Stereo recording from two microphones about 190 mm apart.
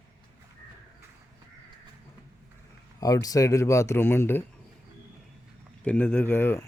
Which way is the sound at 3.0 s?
20° left (ahead or behind).